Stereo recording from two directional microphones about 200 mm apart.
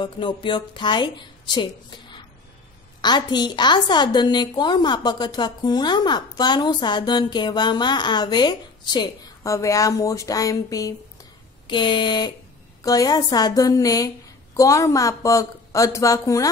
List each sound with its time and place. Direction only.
0.0 s a woman's voice: 25° left (ahead or behind)